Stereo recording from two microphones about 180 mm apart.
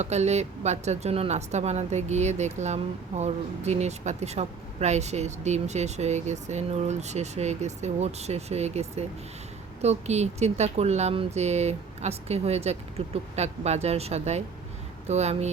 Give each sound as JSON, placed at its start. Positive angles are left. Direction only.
{"t": 0.0, "sound": "speech", "side_deg": -40}